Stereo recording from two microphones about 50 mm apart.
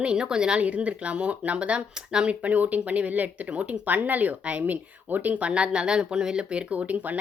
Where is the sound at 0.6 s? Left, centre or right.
Right.